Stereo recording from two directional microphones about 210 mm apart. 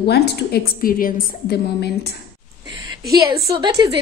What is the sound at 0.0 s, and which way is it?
A woman's voice, 50° left (ahead or behind).